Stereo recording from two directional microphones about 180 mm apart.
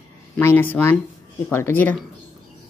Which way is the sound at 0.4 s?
10° left (ahead or behind).